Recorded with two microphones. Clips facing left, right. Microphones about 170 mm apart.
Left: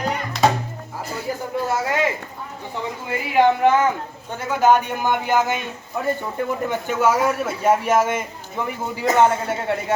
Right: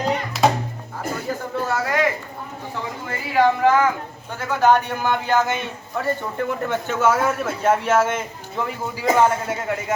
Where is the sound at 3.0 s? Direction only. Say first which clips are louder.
Left 1 dB; 20° left (ahead or behind).